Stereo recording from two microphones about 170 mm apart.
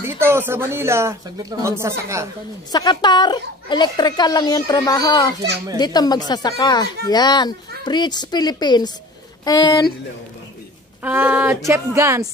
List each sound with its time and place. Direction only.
0.0 s speech: 15° right (ahead or behind)
2.7 s a woman's voice: 25° left (ahead or behind)
11.0 s speech: 10° right (ahead or behind)